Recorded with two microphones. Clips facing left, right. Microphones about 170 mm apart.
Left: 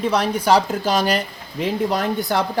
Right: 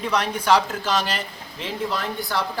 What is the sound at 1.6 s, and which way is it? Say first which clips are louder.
Speech: left 7 dB; 45° left (ahead or behind).